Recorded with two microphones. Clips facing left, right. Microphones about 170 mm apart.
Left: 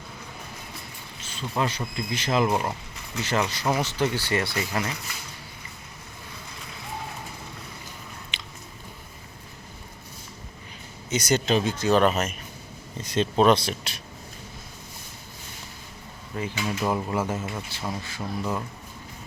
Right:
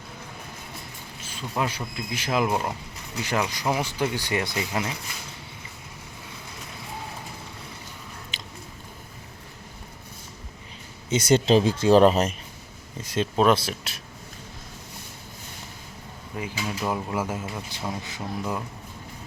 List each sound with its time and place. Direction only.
1.2 s speech: 10° right (ahead or behind)
8.3 s chewing: 40° right (ahead or behind)
11.1 s speech: 30° right (ahead or behind)
13.0 s speech: 5° right (ahead or behind)
16.3 s speech: 5° right (ahead or behind)